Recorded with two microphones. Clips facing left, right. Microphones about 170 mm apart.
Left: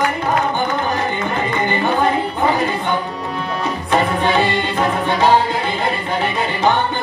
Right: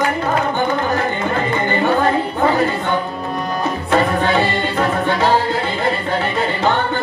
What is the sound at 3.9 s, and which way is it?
Music, 15° left (ahead or behind).